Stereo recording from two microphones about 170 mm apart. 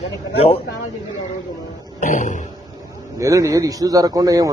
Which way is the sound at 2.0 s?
50° left (ahead or behind).